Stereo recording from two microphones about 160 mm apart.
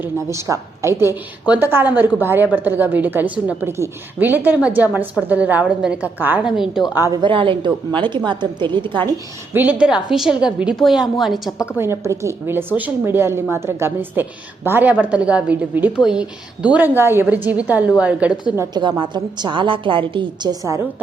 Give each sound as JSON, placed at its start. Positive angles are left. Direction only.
{"t": 0.0, "sound": "a woman's voice", "side_deg": -20}
{"t": 6.9, "sound": "a woman's voice", "side_deg": -15}
{"t": 7.2, "sound": "a woman's voice", "side_deg": -30}
{"t": 9.5, "sound": "a woman's voice", "side_deg": -10}
{"t": 11.8, "sound": "a woman's voice", "side_deg": -15}
{"t": 18.6, "sound": "a woman's voice", "side_deg": -25}